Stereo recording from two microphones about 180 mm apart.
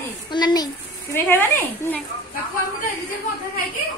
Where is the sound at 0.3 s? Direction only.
25° left (ahead or behind).